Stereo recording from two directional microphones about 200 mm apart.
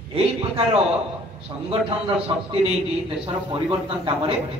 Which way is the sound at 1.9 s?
30° right (ahead or behind).